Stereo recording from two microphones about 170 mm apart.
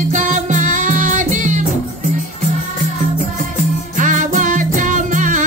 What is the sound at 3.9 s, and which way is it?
Music, 50° right (ahead or behind).